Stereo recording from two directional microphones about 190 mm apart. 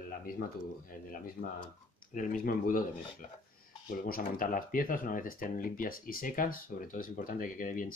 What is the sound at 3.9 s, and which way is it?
Speech, 45° left (ahead or behind).